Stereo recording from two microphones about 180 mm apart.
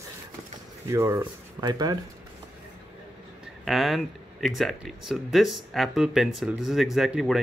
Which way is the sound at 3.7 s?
Centre (ahead or behind).